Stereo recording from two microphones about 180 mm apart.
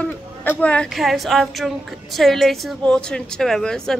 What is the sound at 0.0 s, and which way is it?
A woman's voice, 10° left (ahead or behind).